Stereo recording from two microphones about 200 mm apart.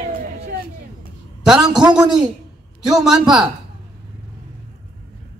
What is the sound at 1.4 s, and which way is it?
A man's voice, 5° right (ahead or behind).